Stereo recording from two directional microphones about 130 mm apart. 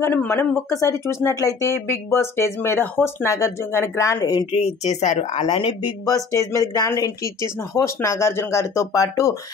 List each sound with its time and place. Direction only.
0.0 s speech: 15° left (ahead or behind)
4.5 s speech: 50° left (ahead or behind)
6.0 s speech: 25° left (ahead or behind)